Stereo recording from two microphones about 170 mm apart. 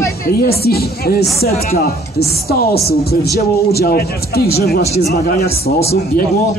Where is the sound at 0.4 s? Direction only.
65° left (ahead or behind).